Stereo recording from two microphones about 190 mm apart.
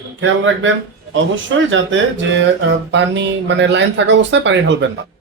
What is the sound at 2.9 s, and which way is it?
Speech, 70° right (ahead or behind).